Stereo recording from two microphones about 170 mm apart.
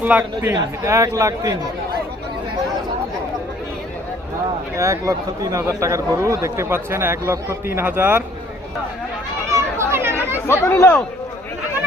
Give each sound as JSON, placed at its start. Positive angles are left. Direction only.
{"t": 0.0, "sound": "speech", "side_deg": -10}
{"t": 4.8, "sound": "speech", "side_deg": -20}
{"t": 9.5, "sound": "chatter", "side_deg": -15}
{"t": 10.4, "sound": "speech", "side_deg": 15}